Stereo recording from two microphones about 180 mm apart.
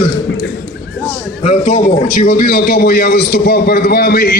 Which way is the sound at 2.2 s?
60° left (ahead or behind).